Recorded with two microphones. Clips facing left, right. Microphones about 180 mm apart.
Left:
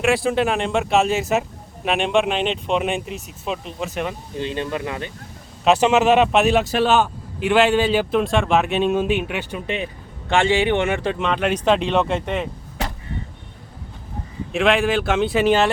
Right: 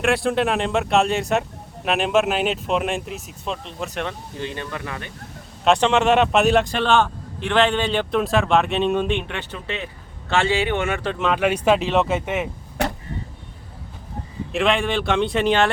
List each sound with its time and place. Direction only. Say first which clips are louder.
0.0 s speech: left 1 dB; centre (ahead or behind)
4.4 s speech: left 7 dB; 20° left (ahead or behind)
5.6 s a man's voice: left 2 dB; 5° left (ahead or behind)
11.2 s speech: right 1 dB; 5° right (ahead or behind)
14.5 s speech: left 2 dB; centre (ahead or behind)